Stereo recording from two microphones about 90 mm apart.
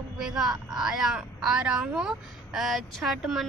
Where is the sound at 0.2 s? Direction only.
5° right (ahead or behind).